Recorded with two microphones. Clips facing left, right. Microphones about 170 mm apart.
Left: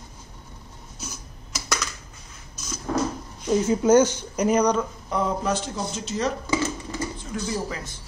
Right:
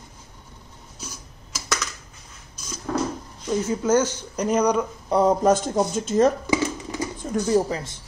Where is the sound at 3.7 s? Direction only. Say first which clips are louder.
Left 4 dB; 15° left (ahead or behind).